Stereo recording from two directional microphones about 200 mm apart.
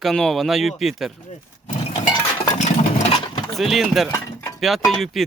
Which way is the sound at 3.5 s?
Centre (ahead or behind).